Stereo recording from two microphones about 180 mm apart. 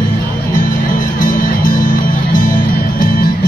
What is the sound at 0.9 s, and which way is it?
Music, 50° left (ahead or behind).